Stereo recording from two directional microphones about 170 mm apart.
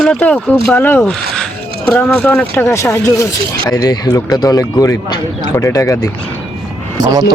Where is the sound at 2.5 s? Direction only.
15° left (ahead or behind).